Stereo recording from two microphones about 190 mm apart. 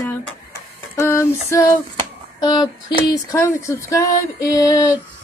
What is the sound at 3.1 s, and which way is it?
A woman's voice, 15° left (ahead or behind).